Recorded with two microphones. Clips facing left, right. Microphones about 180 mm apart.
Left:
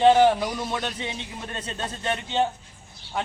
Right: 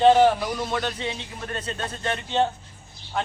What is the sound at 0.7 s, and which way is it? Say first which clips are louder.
Speech: right 3 dB; 20° left (ahead or behind).